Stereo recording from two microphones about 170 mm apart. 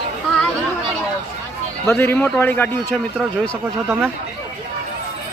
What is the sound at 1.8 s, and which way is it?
Speech, 15° left (ahead or behind).